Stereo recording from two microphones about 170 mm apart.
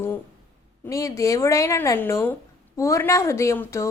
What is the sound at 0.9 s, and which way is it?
A woman's voice, 20° left (ahead or behind).